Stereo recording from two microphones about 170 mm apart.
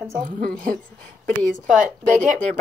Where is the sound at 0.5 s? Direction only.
5° left (ahead or behind).